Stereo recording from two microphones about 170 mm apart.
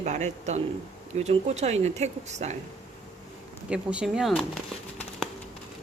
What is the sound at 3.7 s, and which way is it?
Speech, 5° right (ahead or behind).